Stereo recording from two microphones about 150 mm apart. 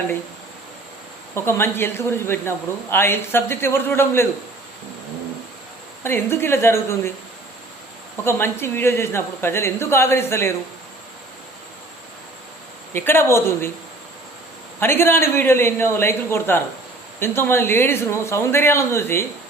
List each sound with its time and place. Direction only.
1.5 s speech: 15° left (ahead or behind)
6.0 s speech: 15° left (ahead or behind)
8.2 s speech: 15° left (ahead or behind)
12.9 s speech: 15° left (ahead or behind)
14.8 s speech: 15° left (ahead or behind)